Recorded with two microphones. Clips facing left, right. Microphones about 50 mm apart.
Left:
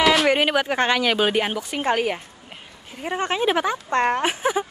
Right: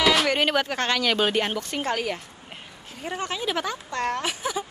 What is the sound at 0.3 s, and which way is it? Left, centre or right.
Speech, centre.